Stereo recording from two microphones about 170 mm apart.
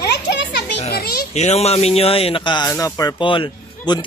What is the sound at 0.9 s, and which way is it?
Speech, 65° left (ahead or behind).